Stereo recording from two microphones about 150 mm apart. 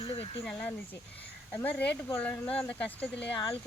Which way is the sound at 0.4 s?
10° left (ahead or behind).